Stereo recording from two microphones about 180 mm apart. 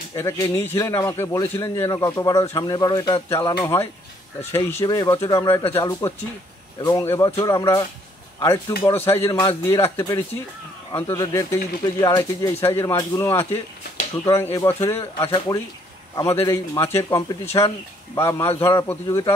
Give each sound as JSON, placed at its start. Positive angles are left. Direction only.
{"t": 0.1, "sound": "a man's voice", "side_deg": 15}